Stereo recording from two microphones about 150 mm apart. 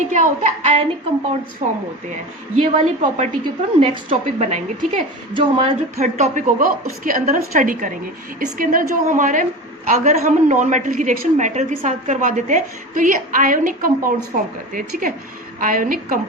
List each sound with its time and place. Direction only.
0.0 s a woman's voice: 55° right (ahead or behind)
2.6 s a woman's voice: 50° right (ahead or behind)
3.8 s a woman's voice: 40° right (ahead or behind)
5.3 s a woman's voice: 40° right (ahead or behind); by 16.2 s 65° right (ahead or behind)